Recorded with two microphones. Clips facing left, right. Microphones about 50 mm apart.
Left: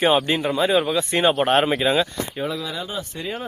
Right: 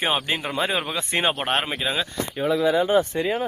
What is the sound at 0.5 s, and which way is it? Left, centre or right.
Speech, right.